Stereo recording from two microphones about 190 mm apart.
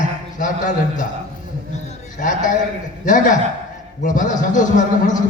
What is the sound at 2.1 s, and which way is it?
A man's voice, 40° left (ahead or behind).